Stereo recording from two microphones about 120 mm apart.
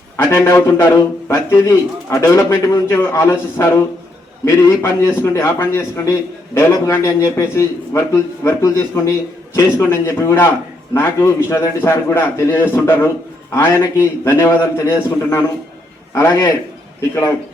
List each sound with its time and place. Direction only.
0.2 s a man's voice: 20° left (ahead or behind)